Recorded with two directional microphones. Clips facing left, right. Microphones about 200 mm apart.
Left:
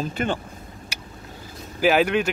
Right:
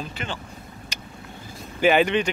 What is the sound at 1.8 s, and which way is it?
Speech, centre (ahead or behind).